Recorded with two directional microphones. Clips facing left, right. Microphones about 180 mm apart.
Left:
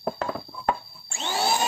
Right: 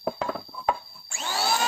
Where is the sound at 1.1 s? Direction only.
25° left (ahead or behind).